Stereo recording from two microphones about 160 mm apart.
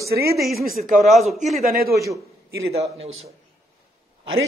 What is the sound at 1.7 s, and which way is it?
Speech, 70° right (ahead or behind).